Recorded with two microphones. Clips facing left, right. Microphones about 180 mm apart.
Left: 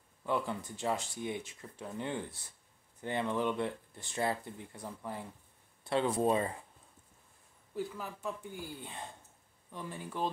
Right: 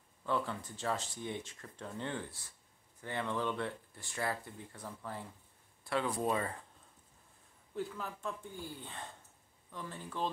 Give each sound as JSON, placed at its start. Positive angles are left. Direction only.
{"t": 0.2, "sound": "speech", "side_deg": 15}
{"t": 7.7, "sound": "speech", "side_deg": 5}